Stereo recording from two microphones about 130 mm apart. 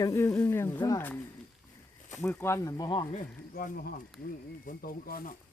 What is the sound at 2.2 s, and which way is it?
Speech, 15° left (ahead or behind).